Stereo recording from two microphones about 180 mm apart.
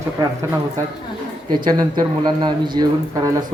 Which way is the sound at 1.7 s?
20° right (ahead or behind).